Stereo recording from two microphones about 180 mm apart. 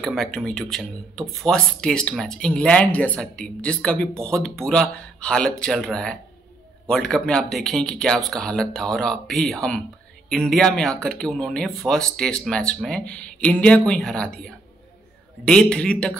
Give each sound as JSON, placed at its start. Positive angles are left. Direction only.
{"t": 0.0, "sound": "speech", "side_deg": 0}